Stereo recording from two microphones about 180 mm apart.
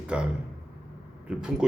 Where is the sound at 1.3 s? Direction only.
5° right (ahead or behind).